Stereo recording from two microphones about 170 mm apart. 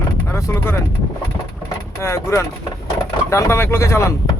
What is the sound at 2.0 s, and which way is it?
Speech, 15° left (ahead or behind).